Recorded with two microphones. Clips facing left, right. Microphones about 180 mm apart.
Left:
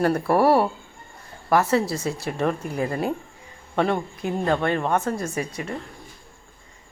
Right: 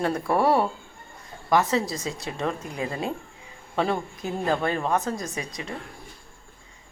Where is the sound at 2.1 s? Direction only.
35° left (ahead or behind).